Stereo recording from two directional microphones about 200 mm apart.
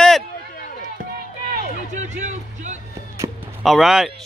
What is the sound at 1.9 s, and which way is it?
Music, 35° right (ahead or behind).